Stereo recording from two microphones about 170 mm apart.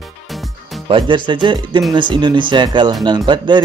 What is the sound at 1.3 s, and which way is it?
Speech, 25° right (ahead or behind).